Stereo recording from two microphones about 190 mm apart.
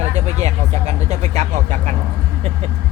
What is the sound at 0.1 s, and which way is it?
Vehicle, 35° right (ahead or behind).